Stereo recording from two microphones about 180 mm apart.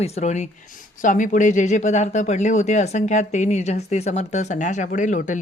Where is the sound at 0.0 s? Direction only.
35° left (ahead or behind).